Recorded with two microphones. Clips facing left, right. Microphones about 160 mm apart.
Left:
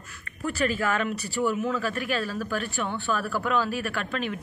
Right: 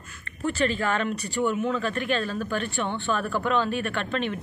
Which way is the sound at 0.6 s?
5° left (ahead or behind).